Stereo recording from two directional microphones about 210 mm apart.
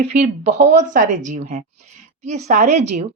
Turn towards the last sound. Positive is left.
turn(degrees=-35)  # may be behind; listen again after turning